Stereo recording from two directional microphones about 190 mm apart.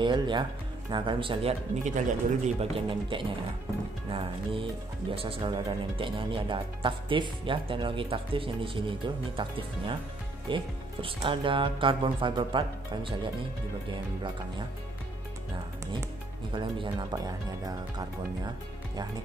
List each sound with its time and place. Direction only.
0.0 s speech: 25° right (ahead or behind)
1.9 s speech: 40° right (ahead or behind)
2.9 s speech: 25° right (ahead or behind)
16.5 s speech: 25° right (ahead or behind)